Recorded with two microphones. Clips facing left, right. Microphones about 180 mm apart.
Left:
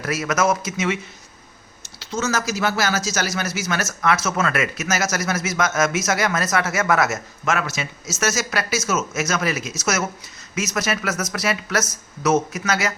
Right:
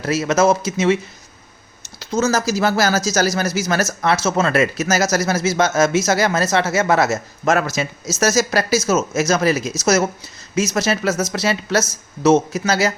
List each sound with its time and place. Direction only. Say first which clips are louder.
0.0 s speech: right 5 dB; 25° right (ahead or behind)
2.0 s speech: right 5 dB; 40° right (ahead or behind)